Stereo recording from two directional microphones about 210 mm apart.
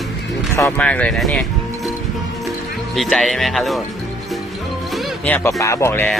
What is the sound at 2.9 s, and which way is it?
Speech, centre (ahead or behind).